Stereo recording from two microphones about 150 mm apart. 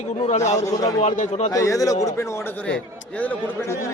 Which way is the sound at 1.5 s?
20° left (ahead or behind).